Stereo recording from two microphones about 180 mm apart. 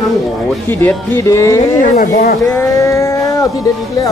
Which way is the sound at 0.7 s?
10° left (ahead or behind).